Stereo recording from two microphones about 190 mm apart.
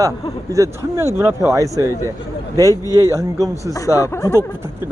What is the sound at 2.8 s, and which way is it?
Speech, 20° left (ahead or behind).